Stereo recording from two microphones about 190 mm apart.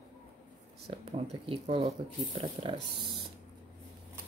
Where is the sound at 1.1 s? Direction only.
30° right (ahead or behind).